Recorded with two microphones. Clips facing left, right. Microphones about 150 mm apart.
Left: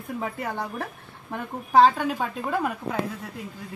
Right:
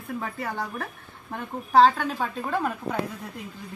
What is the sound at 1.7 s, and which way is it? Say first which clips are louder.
A woman's voice: even; 15° left (ahead or behind).